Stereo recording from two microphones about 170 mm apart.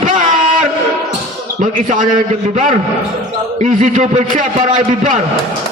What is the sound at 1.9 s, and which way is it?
A man's voice, 50° right (ahead or behind).